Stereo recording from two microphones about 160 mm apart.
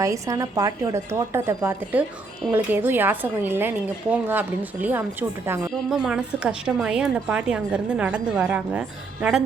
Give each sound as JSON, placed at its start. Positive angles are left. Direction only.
{"t": 0.0, "sound": "a woman's voice", "side_deg": -20}